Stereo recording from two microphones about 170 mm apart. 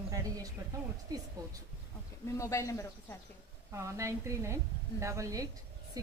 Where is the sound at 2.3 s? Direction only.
20° left (ahead or behind).